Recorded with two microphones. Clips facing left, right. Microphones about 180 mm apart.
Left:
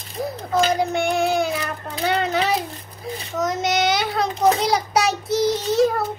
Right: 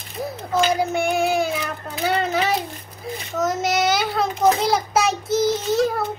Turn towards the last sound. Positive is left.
turn(degrees=0)  # may be behind; listen again after turning